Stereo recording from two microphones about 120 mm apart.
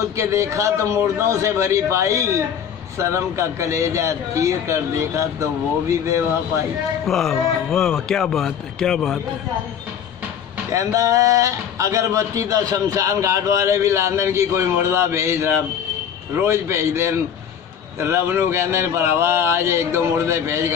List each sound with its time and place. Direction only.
0.1 s speech: 25° right (ahead or behind)
7.1 s a man's voice: 5° left (ahead or behind)
10.7 s speech: 25° right (ahead or behind)